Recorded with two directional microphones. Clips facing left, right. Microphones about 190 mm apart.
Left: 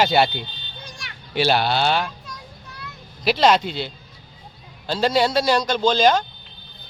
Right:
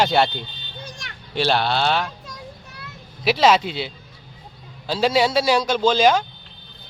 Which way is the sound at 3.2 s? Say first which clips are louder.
Right 1 dB; 5° right (ahead or behind).